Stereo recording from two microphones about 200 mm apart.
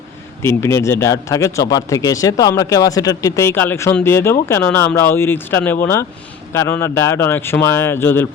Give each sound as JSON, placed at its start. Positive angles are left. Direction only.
{"t": 0.4, "sound": "a man's voice", "side_deg": 15}